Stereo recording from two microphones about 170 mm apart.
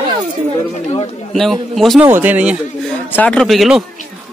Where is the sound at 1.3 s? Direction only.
Centre (ahead or behind).